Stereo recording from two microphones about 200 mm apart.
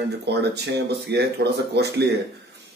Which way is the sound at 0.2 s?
55° right (ahead or behind).